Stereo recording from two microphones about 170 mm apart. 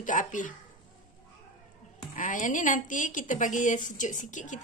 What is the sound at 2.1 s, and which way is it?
A woman's voice, 50° left (ahead or behind).